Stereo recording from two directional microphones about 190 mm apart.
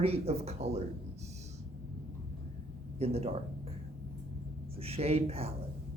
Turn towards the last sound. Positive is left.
turn(degrees=-30)  # may be behind; listen again after turning